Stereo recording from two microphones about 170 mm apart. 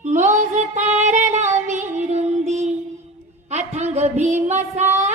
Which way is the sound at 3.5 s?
40° right (ahead or behind).